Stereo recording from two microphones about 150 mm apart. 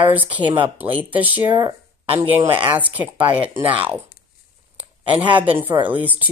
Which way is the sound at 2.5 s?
10° right (ahead or behind).